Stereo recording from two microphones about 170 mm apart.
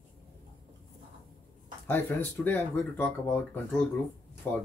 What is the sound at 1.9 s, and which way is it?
Speech, 10° left (ahead or behind).